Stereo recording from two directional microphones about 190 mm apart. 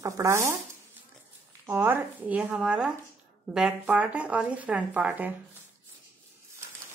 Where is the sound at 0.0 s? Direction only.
15° right (ahead or behind).